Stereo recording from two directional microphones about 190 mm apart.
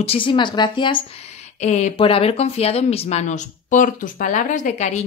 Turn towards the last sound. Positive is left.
turn(degrees=35)  # may be behind; listen again after turning